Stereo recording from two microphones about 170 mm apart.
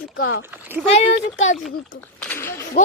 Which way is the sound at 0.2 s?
85° left.